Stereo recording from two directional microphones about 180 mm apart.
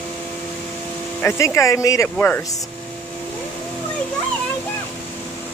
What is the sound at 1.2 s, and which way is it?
Speech, 15° left (ahead or behind).